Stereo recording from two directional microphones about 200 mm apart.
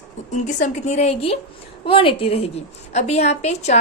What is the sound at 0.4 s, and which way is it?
A woman's voice, 35° left (ahead or behind).